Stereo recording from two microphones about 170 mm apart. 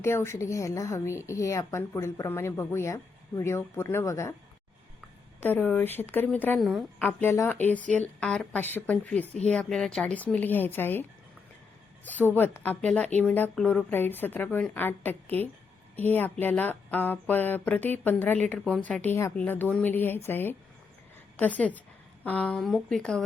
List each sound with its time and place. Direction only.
0.0 s speech: 15° left (ahead or behind)
5.4 s speech: 10° left (ahead or behind)
7.1 s speech: 10° left (ahead or behind)
12.0 s speech: 10° left (ahead or behind)